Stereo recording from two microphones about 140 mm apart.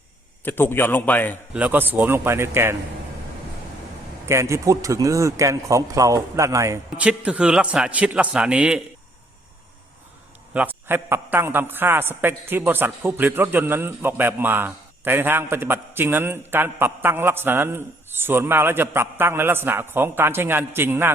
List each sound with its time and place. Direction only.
0.4 s a man's voice: 15° left (ahead or behind)
1.5 s a man's voice: 10° right (ahead or behind)
4.3 s a man's voice: 20° right (ahead or behind)
6.9 s a man's voice: 10° right (ahead or behind)
10.5 s a man's voice: 15° right (ahead or behind)